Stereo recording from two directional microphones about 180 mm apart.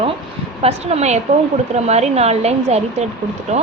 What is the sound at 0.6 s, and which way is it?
Speech, 35° right (ahead or behind).